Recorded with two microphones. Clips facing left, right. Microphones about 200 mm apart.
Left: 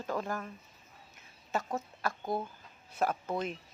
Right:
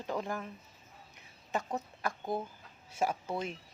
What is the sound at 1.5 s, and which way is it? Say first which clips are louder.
Speech: left 1 dB; 15° right (ahead or behind).